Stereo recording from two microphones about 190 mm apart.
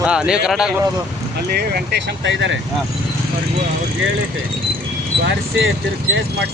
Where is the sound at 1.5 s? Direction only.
55° right (ahead or behind); by 2.6 s 75° right (ahead or behind).